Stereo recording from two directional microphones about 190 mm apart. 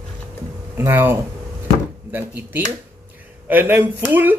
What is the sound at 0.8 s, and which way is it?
Speech, 10° right (ahead or behind).